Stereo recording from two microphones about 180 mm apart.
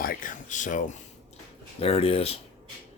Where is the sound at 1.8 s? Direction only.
30° left (ahead or behind).